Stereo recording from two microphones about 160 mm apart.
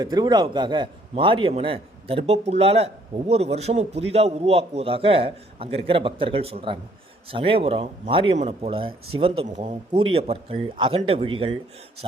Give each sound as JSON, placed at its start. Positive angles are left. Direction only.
{"t": 0.0, "sound": "a man's voice", "side_deg": -25}